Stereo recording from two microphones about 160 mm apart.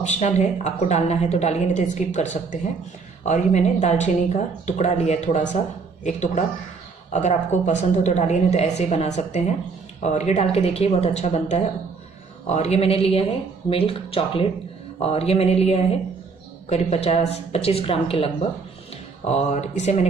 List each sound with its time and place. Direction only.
0.0 s a woman's voice: 45° left (ahead or behind)